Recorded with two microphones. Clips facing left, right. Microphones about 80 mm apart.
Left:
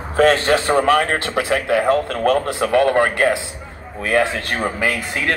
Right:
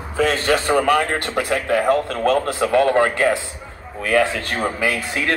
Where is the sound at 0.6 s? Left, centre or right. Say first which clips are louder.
Left 1 dB; centre.